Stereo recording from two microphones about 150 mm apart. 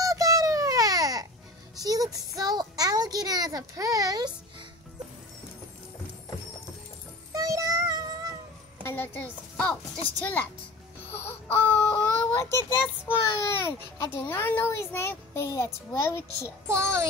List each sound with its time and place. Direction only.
0.0 s babbling: 25° right (ahead or behind)
1.8 s child singing: 25° right (ahead or behind)
7.3 s child singing: 20° right (ahead or behind)
8.8 s a woman's voice: 15° left (ahead or behind)
11.1 s a child's voice: 15° left (ahead or behind)
16.6 s a child's voice: 20° right (ahead or behind)